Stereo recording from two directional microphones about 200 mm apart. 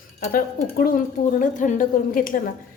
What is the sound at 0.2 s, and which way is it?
A woman's voice, 45° left (ahead or behind).